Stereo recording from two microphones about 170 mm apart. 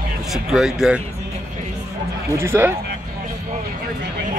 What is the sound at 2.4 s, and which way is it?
Speech, 15° right (ahead or behind).